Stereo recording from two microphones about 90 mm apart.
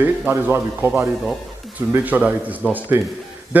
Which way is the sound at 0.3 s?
30° right (ahead or behind).